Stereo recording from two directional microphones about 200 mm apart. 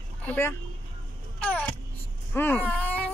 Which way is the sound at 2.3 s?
10° left (ahead or behind).